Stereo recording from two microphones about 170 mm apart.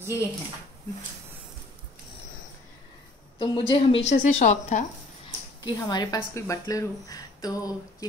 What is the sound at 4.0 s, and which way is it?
Speech, 45° left (ahead or behind).